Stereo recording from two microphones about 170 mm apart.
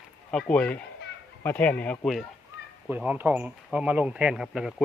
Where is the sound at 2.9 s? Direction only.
10° right (ahead or behind).